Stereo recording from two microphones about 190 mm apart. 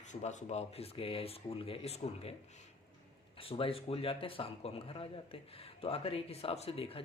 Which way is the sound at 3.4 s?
30° left (ahead or behind).